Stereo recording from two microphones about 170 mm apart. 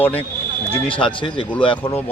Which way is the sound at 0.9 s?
30° left (ahead or behind).